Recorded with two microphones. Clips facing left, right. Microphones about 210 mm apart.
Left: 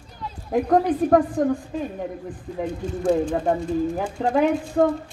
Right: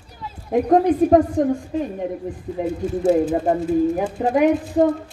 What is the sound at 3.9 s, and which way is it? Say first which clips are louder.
Speech: right 3 dB; 20° right (ahead or behind).